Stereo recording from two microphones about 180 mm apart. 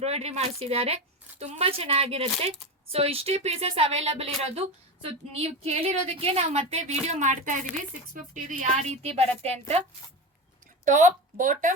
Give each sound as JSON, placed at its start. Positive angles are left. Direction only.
{"t": 0.0, "sound": "a woman's voice", "side_deg": -35}
{"t": 10.8, "sound": "speech", "side_deg": -45}